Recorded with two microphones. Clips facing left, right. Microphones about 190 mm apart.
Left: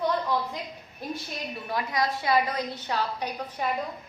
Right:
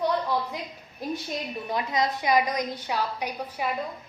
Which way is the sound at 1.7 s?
20° right (ahead or behind).